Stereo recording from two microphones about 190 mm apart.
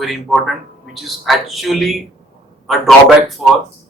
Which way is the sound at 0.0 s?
Centre (ahead or behind).